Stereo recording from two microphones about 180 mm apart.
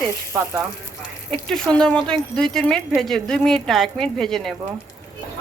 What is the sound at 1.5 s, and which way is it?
Speech, 5° left (ahead or behind).